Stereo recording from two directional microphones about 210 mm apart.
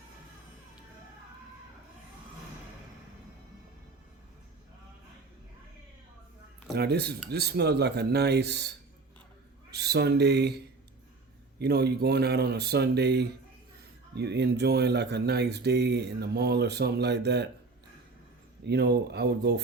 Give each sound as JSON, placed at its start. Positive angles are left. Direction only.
{"t": 6.7, "sound": "speech", "side_deg": -50}
{"t": 9.7, "sound": "speech", "side_deg": -50}
{"t": 11.6, "sound": "speech", "side_deg": -50}
{"t": 18.6, "sound": "speech", "side_deg": -50}